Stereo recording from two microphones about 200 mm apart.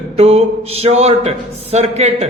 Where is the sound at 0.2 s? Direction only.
30° right (ahead or behind).